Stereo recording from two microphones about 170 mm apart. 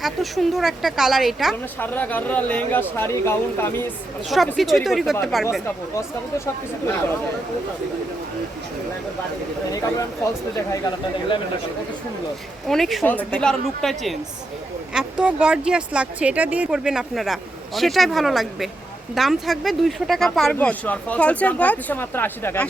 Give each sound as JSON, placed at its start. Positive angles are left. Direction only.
{"t": 0.0, "sound": "speech", "side_deg": 0}
{"t": 1.8, "sound": "speech", "side_deg": 10}
{"t": 4.3, "sound": "speech", "side_deg": 0}
{"t": 5.6, "sound": "speech", "side_deg": 15}
{"t": 12.6, "sound": "speech", "side_deg": 0}